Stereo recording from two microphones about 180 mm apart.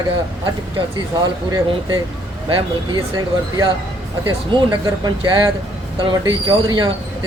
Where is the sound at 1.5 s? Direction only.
25° right (ahead or behind).